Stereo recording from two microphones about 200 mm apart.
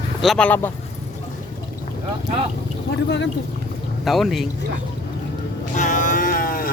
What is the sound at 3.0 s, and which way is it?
Speech, 60° left (ahead or behind).